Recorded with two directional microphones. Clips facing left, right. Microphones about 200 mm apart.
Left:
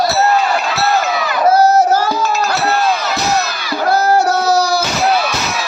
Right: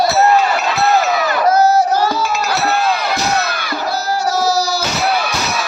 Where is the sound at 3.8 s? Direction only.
55° left (ahead or behind).